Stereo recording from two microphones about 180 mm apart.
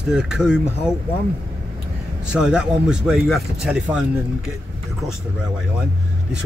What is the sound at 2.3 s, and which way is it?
Speech, 5° right (ahead or behind).